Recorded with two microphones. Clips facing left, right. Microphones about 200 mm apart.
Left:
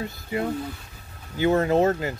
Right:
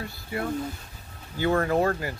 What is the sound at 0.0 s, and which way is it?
Speech, 20° left (ahead or behind).